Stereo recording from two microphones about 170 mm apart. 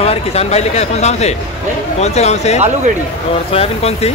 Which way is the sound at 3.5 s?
35° left (ahead or behind).